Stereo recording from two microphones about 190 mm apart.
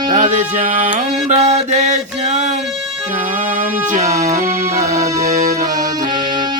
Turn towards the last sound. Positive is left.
turn(degrees=-15)  # may be behind; listen again after turning